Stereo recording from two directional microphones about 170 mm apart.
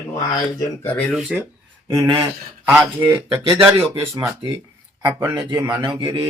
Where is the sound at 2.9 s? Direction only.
15° right (ahead or behind).